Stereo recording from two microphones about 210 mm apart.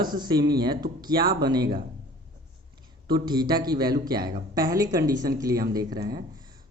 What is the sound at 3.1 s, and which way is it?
Speech, 20° right (ahead or behind).